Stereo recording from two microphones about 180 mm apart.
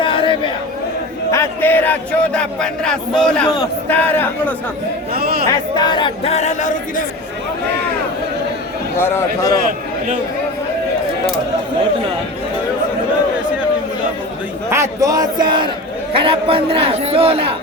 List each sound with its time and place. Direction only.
0.0 s chatter: 30° left (ahead or behind)
1.3 s a man's voice: 15° left (ahead or behind)
5.1 s chatter: 60° right (ahead or behind)
5.5 s speech: 20° left (ahead or behind); by 7.0 s 45° left (ahead or behind)
9.0 s a man's voice: 15° left (ahead or behind)
14.7 s a man's voice: 20° right (ahead or behind)